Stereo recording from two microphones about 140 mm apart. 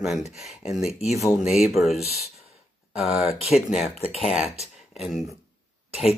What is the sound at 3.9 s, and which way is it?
Speech, 45° left (ahead or behind).